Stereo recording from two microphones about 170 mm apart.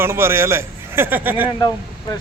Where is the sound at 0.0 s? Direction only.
15° right (ahead or behind).